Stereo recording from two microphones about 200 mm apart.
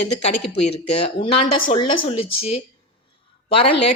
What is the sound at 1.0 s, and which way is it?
Speech, 30° left (ahead or behind).